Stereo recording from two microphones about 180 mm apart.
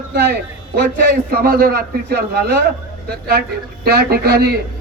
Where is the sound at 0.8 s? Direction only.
60° right (ahead or behind).